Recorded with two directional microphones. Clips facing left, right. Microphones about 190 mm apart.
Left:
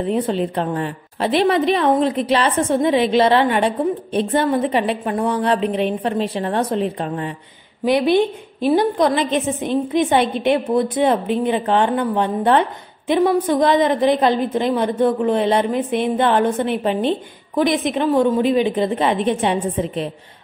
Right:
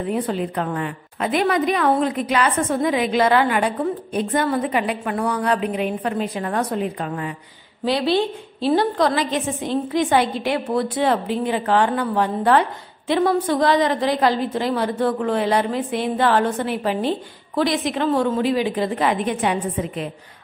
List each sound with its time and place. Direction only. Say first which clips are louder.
0.0 s a woman's voice: left 3 dB; 25° left (ahead or behind)
7.8 s a woman's voice: left 4 dB; 20° left (ahead or behind)